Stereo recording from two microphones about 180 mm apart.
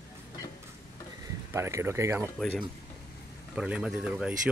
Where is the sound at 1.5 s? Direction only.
15° right (ahead or behind).